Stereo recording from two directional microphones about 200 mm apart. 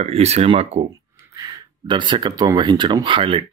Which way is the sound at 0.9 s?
15° right (ahead or behind).